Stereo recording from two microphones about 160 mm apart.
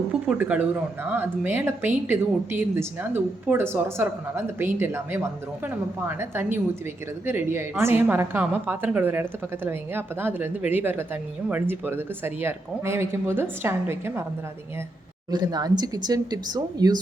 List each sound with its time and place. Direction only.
0.1 s speech: 5° right (ahead or behind)
15.3 s speech: 25° right (ahead or behind)